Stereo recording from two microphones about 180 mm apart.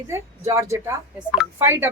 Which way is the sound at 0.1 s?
15° right (ahead or behind).